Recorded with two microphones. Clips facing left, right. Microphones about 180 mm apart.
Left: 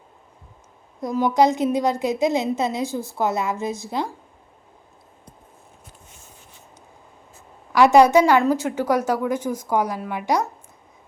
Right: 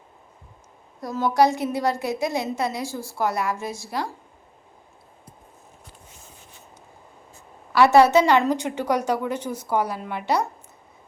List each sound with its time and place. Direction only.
1.0 s a woman's voice: 15° left (ahead or behind)
7.7 s a woman's voice: 15° left (ahead or behind)